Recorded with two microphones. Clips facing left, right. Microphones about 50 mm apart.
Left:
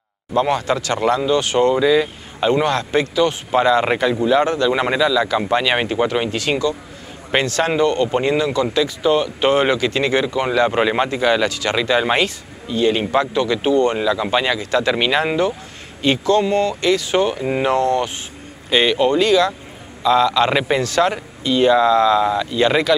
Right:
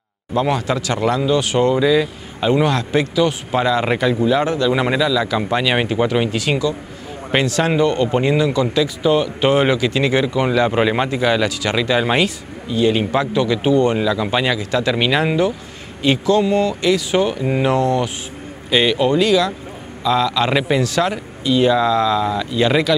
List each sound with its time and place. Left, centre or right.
0.3 s speech: centre
17.7 s speech: centre
18.7 s speech: centre